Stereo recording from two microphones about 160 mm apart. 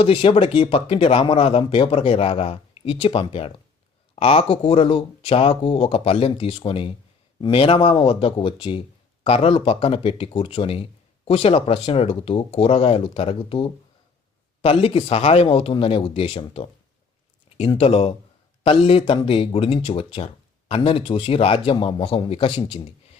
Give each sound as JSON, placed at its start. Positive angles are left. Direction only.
{"t": 0.0, "sound": "speech", "side_deg": 35}
{"t": 17.7, "sound": "speech", "side_deg": 35}